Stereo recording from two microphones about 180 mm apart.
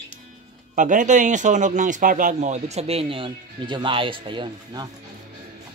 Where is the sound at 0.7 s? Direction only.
45° right (ahead or behind); by 4.9 s 25° right (ahead or behind).